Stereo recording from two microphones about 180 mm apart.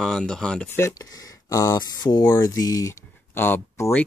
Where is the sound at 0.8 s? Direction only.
20° left (ahead or behind).